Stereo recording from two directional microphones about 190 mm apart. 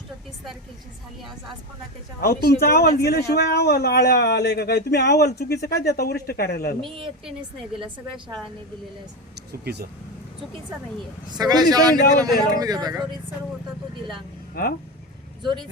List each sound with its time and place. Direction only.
2.2 s speech: 55° left (ahead or behind)
7.8 s a man's voice: 25° right (ahead or behind)
9.5 s speech: 60° right (ahead or behind)
11.3 s a man's voice: 20° right (ahead or behind)
14.5 s speech: 50° left (ahead or behind)